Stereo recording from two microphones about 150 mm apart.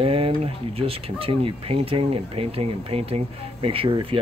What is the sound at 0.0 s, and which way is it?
Speech, 40° right (ahead or behind).